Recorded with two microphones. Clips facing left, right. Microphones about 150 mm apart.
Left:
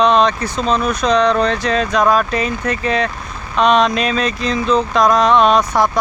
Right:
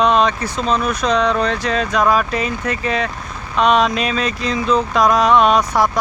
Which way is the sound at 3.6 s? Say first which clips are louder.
Left 1 dB; 5° right (ahead or behind).